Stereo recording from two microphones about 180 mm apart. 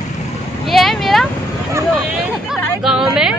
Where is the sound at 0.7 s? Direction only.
Centre (ahead or behind).